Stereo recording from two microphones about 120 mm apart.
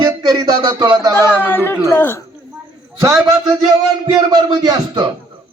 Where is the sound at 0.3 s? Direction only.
35° right (ahead or behind).